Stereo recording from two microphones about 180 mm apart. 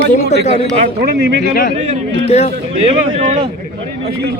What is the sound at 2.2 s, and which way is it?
Speech, 35° left (ahead or behind).